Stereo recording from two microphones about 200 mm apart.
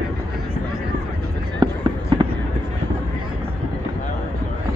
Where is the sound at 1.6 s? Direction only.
20° right (ahead or behind).